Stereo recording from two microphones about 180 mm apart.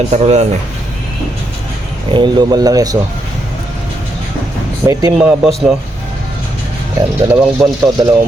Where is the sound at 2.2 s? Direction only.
25° right (ahead or behind).